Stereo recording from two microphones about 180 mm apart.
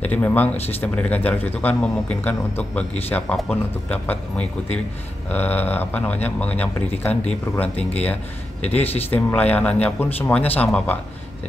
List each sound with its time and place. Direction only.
0.0 s speech: 10° left (ahead or behind)
8.6 s speech: 35° left (ahead or behind)
9.1 s speech: 10° left (ahead or behind)